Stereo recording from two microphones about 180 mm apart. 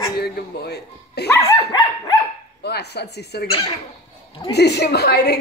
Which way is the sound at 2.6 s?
65° left (ahead or behind).